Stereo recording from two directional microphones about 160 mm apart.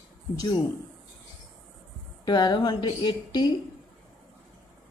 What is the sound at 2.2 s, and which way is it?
Speech, 25° left (ahead or behind).